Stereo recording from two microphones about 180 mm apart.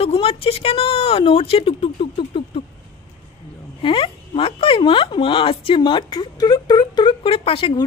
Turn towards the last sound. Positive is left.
turn(degrees=30)  # may be behind; listen again after turning